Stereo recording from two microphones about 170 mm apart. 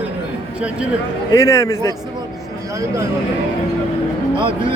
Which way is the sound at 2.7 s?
15° right (ahead or behind).